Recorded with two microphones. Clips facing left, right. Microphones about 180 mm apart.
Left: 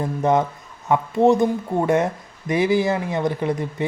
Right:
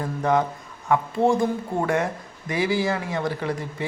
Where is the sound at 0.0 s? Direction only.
20° left (ahead or behind).